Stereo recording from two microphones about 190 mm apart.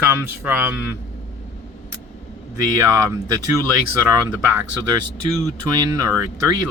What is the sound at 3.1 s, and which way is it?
Speech, 20° right (ahead or behind).